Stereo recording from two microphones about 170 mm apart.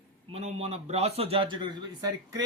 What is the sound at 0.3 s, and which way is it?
A man's voice, 40° right (ahead or behind).